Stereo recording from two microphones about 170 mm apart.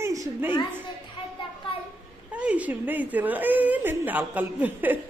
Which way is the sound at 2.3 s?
10° right (ahead or behind).